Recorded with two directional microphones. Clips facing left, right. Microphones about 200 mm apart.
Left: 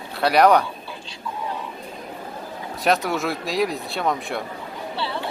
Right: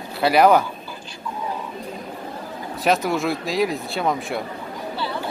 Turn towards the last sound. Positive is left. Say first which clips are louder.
# right 1 dB
turn(degrees=0)  # may be behind; listen again after turning